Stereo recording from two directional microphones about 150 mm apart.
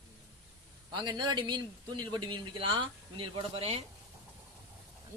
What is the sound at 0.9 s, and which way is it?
A man's voice, 30° right (ahead or behind).